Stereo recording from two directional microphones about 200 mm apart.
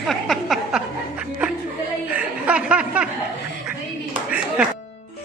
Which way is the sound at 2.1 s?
5° right (ahead or behind).